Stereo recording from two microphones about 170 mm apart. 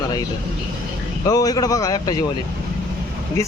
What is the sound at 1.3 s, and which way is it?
Speech, 20° left (ahead or behind).